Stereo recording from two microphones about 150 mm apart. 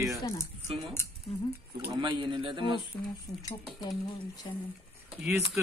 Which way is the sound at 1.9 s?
30° right (ahead or behind).